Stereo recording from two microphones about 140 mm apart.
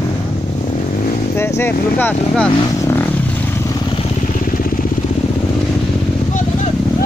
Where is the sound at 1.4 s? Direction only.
15° left (ahead or behind).